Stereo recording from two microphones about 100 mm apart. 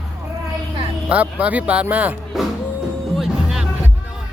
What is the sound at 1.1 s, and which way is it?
Speech, 15° right (ahead or behind).